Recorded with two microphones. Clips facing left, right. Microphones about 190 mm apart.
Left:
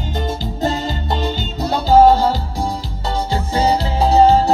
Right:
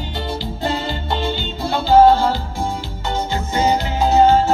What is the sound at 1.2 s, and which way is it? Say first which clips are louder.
Music: left 1 dB; 40° left (ahead or behind).